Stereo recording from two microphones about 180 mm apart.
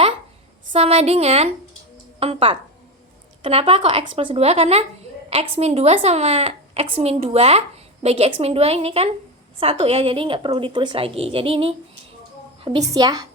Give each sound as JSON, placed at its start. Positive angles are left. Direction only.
{"t": 0.7, "sound": "a woman's voice", "side_deg": -35}
{"t": 12.9, "sound": "a woman's voice", "side_deg": -20}